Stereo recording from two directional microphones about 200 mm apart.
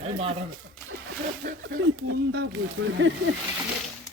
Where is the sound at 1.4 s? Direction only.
50° right (ahead or behind); by 3.3 s 70° right (ahead or behind).